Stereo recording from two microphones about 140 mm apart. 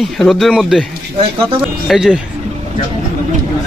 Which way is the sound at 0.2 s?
Centre (ahead or behind).